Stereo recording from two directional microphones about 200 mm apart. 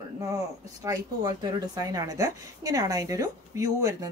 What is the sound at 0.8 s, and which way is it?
A woman's voice, 20° right (ahead or behind).